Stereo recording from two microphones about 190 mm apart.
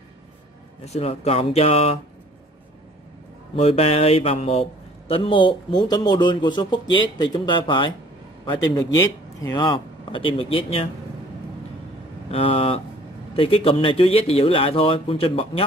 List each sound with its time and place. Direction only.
0.8 s speech: 35° left (ahead or behind)
3.5 s a man's voice: 30° left (ahead or behind)
9.4 s a man's voice: 20° left (ahead or behind)
12.3 s a man's voice: 30° left (ahead or behind)